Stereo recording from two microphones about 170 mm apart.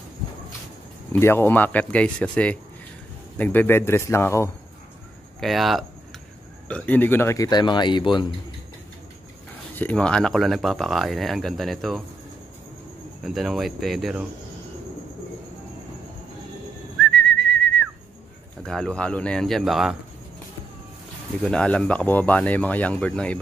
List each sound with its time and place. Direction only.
1.1 s speech: 15° left (ahead or behind)
5.4 s speech: centre (ahead or behind)
6.7 s speech: 10° left (ahead or behind); by 8.3 s 25° left (ahead or behind)
9.8 s speech: 10° left (ahead or behind)
13.2 s speech: centre (ahead or behind)
17.0 s whistling: 5° left (ahead or behind)
18.6 s speech: 5° left (ahead or behind)
21.4 s speech: 5° left (ahead or behind)